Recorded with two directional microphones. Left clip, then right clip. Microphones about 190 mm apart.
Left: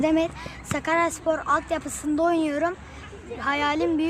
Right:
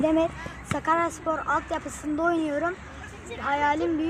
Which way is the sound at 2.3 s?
55° left (ahead or behind).